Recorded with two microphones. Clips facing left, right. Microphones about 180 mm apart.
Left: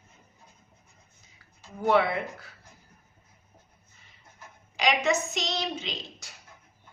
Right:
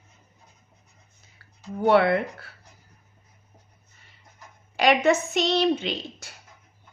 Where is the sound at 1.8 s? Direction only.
65° right (ahead or behind).